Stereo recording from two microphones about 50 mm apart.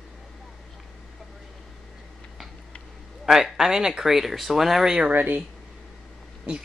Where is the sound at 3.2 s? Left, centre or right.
Centre.